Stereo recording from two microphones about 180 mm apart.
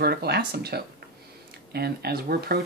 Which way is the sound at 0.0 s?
60° right (ahead or behind).